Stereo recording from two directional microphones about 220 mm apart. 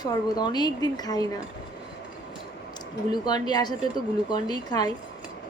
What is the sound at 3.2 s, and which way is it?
A woman's voice, 20° left (ahead or behind).